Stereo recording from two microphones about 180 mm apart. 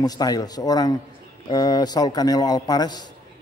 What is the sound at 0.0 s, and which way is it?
A man's voice, 20° left (ahead or behind).